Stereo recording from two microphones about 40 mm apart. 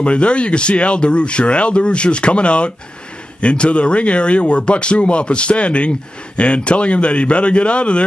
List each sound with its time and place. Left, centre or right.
0.0 s speech: left